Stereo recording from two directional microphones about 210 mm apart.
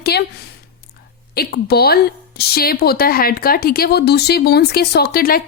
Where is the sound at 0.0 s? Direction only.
50° left (ahead or behind).